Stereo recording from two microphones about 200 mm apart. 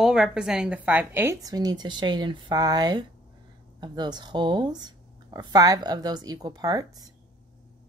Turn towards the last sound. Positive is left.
turn(degrees=-20)  # may be behind; listen again after turning